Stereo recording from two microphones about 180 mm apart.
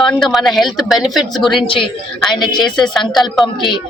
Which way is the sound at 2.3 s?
25° left (ahead or behind).